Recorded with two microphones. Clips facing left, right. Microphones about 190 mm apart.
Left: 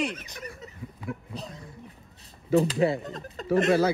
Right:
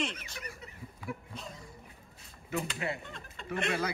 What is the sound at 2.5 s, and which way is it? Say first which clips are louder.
Speech: left 13 dB; 35° left (ahead or behind).